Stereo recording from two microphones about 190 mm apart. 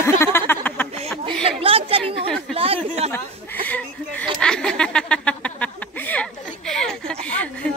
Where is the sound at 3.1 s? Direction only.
10° left (ahead or behind).